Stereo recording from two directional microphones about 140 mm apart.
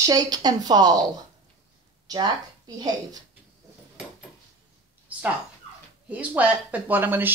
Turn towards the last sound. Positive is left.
turn(degrees=-15)  # may be behind; listen again after turning